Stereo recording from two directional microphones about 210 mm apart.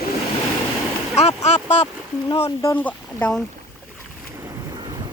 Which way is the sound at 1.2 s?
30° left (ahead or behind).